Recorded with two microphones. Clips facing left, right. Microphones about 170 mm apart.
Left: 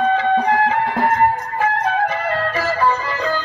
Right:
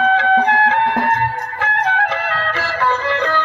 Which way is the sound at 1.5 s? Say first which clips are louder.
Right 2 dB; 80° right.